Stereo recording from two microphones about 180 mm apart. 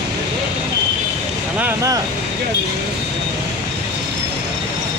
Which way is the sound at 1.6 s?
15° right (ahead or behind).